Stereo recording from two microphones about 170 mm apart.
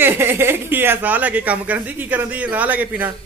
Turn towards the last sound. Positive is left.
turn(degrees=-10)  # may be behind; listen again after turning